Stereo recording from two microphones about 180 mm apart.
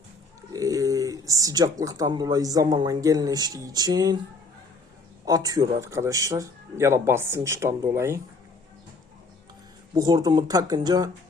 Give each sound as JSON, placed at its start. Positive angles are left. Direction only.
{"t": 0.5, "sound": "speech", "side_deg": -20}
{"t": 5.2, "sound": "a man's voice", "side_deg": -20}
{"t": 9.9, "sound": "speech", "side_deg": -20}